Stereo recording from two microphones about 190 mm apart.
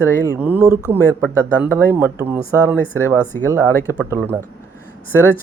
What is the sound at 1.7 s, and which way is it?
A man's voice, 10° right (ahead or behind).